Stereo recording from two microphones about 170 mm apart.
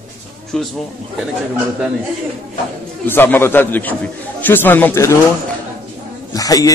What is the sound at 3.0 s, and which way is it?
A man's voice, 10° left (ahead or behind).